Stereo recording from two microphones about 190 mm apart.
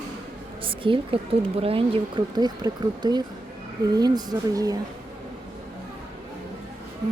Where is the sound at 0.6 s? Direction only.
25° right (ahead or behind).